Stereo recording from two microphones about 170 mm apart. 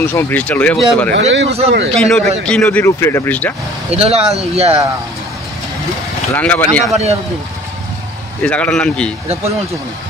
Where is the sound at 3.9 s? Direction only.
35° right (ahead or behind).